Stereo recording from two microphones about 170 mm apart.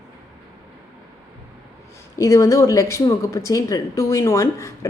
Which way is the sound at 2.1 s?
15° left (ahead or behind).